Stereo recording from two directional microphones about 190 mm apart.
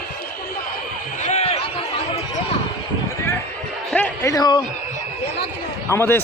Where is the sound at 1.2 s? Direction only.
35° left (ahead or behind).